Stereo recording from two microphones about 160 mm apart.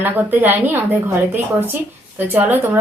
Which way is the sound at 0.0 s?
10° right (ahead or behind).